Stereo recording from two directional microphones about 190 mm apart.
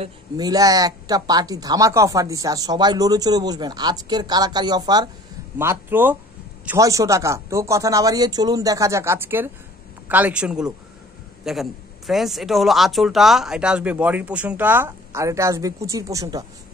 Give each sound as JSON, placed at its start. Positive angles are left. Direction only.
{"t": 0.4, "sound": "speech", "side_deg": -20}